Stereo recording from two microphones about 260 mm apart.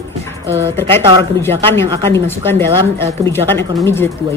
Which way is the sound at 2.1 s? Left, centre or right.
Centre.